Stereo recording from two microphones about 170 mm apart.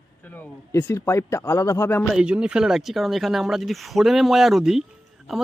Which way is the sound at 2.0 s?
5° right (ahead or behind).